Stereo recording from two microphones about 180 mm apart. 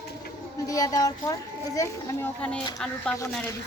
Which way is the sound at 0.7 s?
20° left (ahead or behind).